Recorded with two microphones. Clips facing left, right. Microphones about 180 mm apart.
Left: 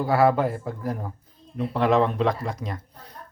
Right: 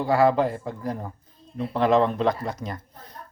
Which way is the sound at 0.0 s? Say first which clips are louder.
Even; 5° left (ahead or behind).